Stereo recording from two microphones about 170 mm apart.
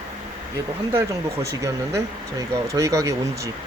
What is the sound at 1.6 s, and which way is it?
Speech, 20° right (ahead or behind).